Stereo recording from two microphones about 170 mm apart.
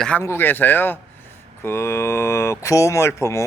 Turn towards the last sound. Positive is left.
turn(degrees=15)  # may be behind; listen again after turning